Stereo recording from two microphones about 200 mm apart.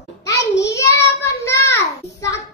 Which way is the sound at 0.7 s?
15° left (ahead or behind).